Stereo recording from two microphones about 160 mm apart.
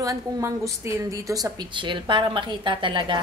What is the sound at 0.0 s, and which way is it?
A woman's voice, 20° right (ahead or behind).